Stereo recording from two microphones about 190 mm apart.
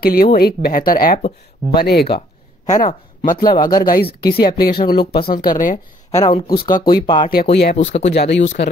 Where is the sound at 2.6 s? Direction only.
40° left (ahead or behind).